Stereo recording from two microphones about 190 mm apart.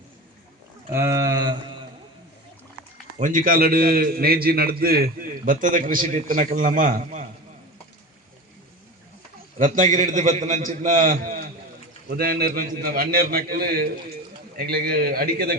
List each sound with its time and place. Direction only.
0.9 s speech: 15° right (ahead or behind)
3.2 s a man's voice: 40° right (ahead or behind)
9.6 s a man's voice: 40° right (ahead or behind)